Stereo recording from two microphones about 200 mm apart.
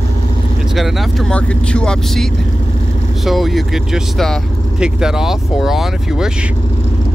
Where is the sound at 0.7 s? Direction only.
Centre (ahead or behind).